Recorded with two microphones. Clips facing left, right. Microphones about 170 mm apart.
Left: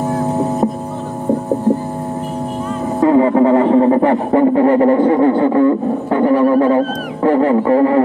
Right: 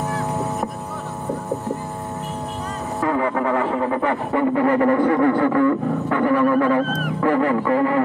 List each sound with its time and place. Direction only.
3.0 s speech: 30° left (ahead or behind)